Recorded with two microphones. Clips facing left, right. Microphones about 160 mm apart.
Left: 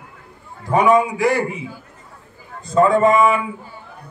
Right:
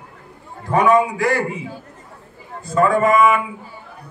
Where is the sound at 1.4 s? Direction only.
20° right (ahead or behind).